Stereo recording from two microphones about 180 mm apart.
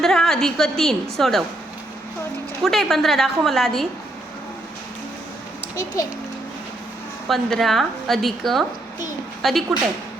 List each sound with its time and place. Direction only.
0.0 s a woman's voice: centre (ahead or behind)
2.6 s a woman's voice: centre (ahead or behind)
5.7 s a child's voice: 20° left (ahead or behind)
7.3 s a woman's voice: centre (ahead or behind)